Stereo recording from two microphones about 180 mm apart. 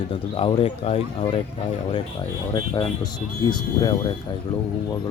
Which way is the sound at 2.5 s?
25° left (ahead or behind).